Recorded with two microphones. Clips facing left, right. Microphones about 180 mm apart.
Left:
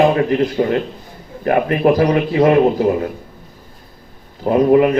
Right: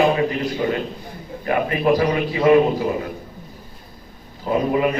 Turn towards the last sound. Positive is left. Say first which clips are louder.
# left 7 dB
turn(degrees=55)  # may be behind; listen again after turning